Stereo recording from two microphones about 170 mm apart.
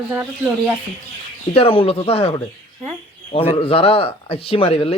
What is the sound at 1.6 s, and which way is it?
Speech, 35° left (ahead or behind).